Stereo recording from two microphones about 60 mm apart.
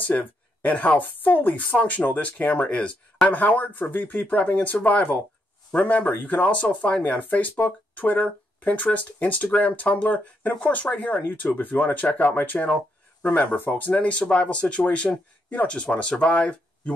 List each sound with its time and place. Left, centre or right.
0.0 s speech: left